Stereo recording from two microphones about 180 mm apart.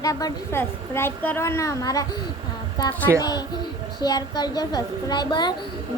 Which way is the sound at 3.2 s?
20° left (ahead or behind).